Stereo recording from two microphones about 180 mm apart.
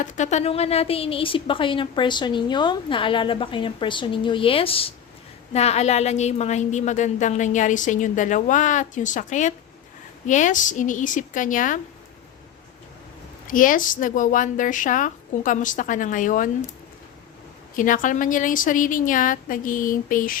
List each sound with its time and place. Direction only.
0.0 s a woman's voice: 40° left (ahead or behind)
13.5 s a woman's voice: 50° left (ahead or behind)
17.7 s a woman's voice: 50° left (ahead or behind)